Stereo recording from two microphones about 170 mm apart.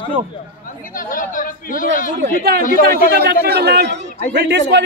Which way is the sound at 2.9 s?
70° right (ahead or behind).